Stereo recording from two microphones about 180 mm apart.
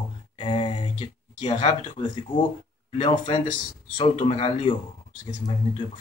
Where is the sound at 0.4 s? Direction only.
30° left (ahead or behind).